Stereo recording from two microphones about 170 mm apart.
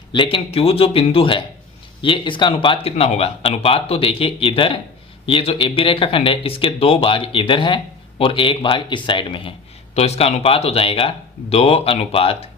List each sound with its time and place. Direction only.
0.1 s speech: 30° left (ahead or behind)